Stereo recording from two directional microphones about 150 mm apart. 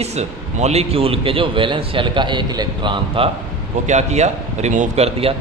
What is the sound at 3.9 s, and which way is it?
A man's voice, 50° right (ahead or behind).